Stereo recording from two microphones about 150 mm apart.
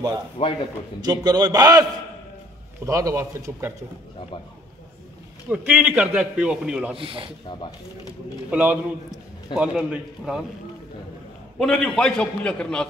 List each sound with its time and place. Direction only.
0.4 s a man's voice: 45° left (ahead or behind)
1.0 s a man's voice: 25° right (ahead or behind)
5.5 s a man's voice: 10° right (ahead or behind)
7.0 s speech: 35° right (ahead or behind)
8.5 s a man's voice: 10° right (ahead or behind)
11.5 s a man's voice: 5° left (ahead or behind)